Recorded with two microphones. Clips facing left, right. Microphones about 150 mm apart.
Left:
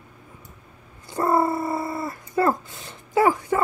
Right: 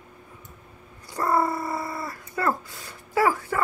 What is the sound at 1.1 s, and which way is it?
Cat, 25° left (ahead or behind).